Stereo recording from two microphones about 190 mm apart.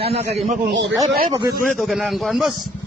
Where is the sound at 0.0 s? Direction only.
30° right (ahead or behind).